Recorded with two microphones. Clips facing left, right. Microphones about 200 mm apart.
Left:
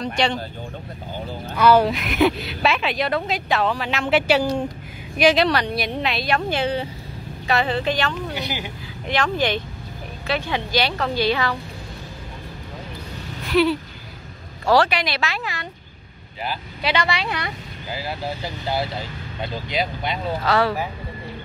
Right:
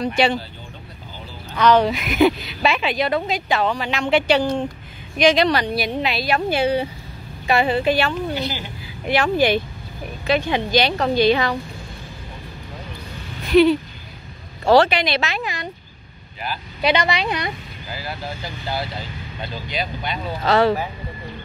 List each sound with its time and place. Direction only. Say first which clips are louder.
0.0 s a woman's voice: right 3 dB; 5° right (ahead or behind)
1.6 s a woman's voice: even; 5° left (ahead or behind); by 8.2 s 10° right (ahead or behind)
8.4 s speech: right 2 dB; 15° left (ahead or behind)
9.0 s a woman's voice: right 4 dB; 10° right (ahead or behind)
13.5 s a woman's voice: right 5 dB; 20° right (ahead or behind)
16.8 s a woman's voice: right 4 dB; 20° right (ahead or behind)
19.7 s speech: left 2 dB; 25° left (ahead or behind)
20.4 s a woman's voice: right 4 dB; 25° right (ahead or behind)